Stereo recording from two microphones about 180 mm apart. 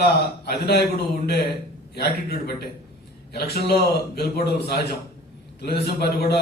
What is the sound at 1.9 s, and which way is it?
A man's voice, 60° left (ahead or behind).